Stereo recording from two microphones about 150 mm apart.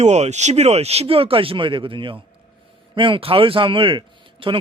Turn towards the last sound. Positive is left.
turn(degrees=-35)  # may be behind; listen again after turning